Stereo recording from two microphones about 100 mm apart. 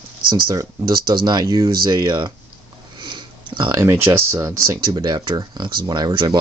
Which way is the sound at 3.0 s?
50° right (ahead or behind).